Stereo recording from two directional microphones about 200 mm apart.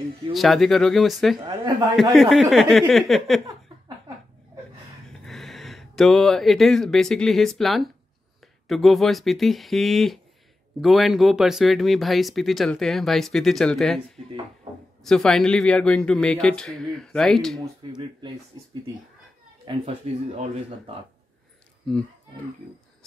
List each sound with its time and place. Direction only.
0.3 s speech: centre (ahead or behind)
5.2 s speech: centre (ahead or behind)
14.2 s speech: 35° right (ahead or behind)
15.0 s speech: centre (ahead or behind)
19.6 s speech: 25° right (ahead or behind)
21.8 s speech: 5° left (ahead or behind)